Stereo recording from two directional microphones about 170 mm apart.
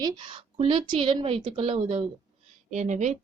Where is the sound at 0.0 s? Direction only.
25° right (ahead or behind).